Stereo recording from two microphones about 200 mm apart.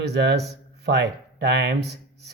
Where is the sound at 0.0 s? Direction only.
55° right (ahead or behind).